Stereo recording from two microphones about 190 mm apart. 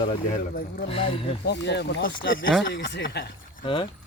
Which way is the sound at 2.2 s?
50° left (ahead or behind).